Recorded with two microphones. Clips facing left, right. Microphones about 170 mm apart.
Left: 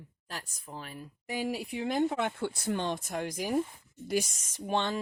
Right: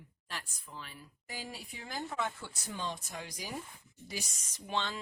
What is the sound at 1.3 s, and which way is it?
Speech, 65° left (ahead or behind).